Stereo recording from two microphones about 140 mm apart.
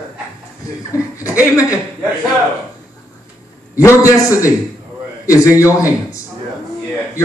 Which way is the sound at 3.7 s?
20° left (ahead or behind).